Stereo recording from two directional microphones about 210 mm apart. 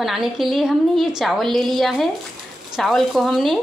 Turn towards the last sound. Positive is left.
turn(degrees=0)  # may be behind; listen again after turning